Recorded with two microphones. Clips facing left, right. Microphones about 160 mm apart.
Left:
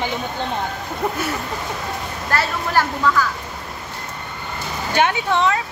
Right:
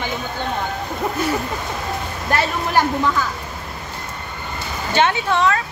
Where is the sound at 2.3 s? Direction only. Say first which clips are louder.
Right 2 dB; 20° right (ahead or behind).